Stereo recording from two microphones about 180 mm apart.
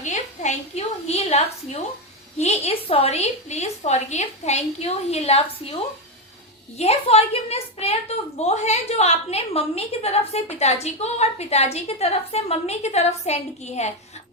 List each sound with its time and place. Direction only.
0.0 s a sound: 40° left (ahead or behind)
2.4 s a woman's voice: 35° left (ahead or behind)
6.7 s a woman's voice: 35° left (ahead or behind)